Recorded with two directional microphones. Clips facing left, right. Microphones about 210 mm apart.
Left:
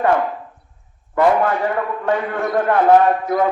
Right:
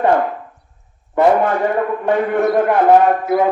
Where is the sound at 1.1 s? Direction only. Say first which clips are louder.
Right 2 dB; 20° right (ahead or behind).